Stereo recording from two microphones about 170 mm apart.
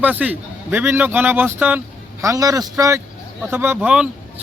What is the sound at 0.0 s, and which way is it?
Speech, 10° right (ahead or behind).